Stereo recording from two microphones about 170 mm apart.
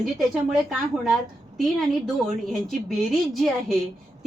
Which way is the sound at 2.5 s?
Centre (ahead or behind).